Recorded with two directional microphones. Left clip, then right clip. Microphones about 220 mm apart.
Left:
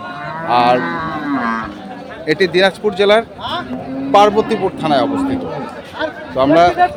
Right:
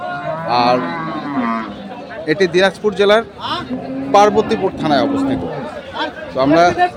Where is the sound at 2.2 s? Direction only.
Centre (ahead or behind).